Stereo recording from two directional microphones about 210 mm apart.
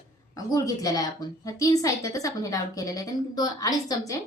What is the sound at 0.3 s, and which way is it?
A woman's voice, 15° left (ahead or behind).